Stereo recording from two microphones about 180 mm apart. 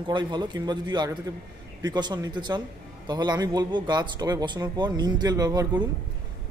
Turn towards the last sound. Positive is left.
turn(degrees=-20)  # may be behind; listen again after turning